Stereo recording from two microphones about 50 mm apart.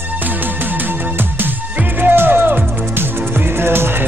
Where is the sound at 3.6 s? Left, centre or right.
Right.